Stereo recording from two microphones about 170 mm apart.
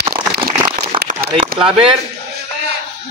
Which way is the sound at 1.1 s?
50° right (ahead or behind).